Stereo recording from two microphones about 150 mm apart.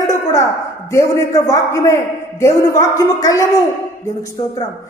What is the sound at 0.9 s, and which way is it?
A man's voice, 20° left (ahead or behind).